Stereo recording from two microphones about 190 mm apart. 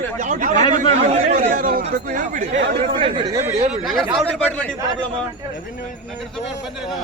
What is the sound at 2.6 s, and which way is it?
Speech, 55° right (ahead or behind).